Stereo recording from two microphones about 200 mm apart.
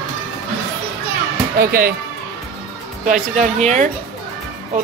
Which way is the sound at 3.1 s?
35° right (ahead or behind).